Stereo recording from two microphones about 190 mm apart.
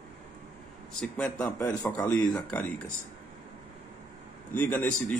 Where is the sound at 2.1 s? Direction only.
20° left (ahead or behind).